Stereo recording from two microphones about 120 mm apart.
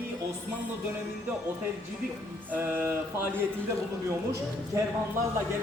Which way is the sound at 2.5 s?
15° right (ahead or behind).